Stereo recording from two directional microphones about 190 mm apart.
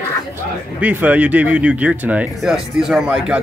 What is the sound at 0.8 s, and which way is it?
Speech, 10° right (ahead or behind).